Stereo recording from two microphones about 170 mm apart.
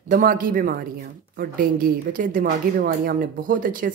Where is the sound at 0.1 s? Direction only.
55° right (ahead or behind).